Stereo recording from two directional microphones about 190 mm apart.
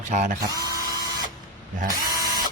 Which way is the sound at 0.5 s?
20° left (ahead or behind).